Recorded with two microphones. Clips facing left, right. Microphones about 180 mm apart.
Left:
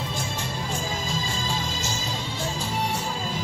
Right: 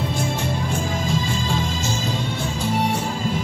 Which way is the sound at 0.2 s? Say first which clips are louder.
Right 7 dB; 60° right (ahead or behind).